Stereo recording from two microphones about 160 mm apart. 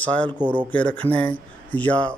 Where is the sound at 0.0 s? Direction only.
10° left (ahead or behind).